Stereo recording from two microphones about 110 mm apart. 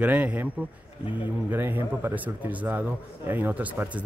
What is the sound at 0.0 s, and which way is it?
Speech, 15° right (ahead or behind).